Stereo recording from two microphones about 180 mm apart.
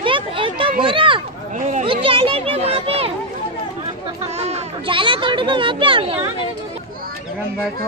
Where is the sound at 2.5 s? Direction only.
35° right (ahead or behind).